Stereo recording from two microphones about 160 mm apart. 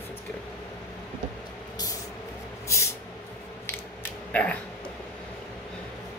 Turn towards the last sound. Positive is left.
turn(degrees=10)  # may be behind; listen again after turning